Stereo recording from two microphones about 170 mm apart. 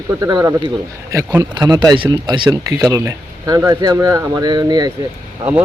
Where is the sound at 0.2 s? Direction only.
20° right (ahead or behind).